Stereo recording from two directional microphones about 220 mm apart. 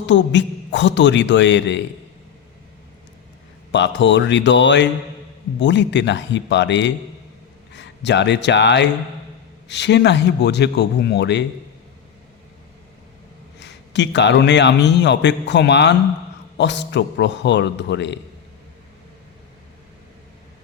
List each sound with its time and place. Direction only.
0.1 s a man's voice: 55° left (ahead or behind)
3.7 s a man's voice: 55° left (ahead or behind)
13.6 s a man's voice: 55° left (ahead or behind)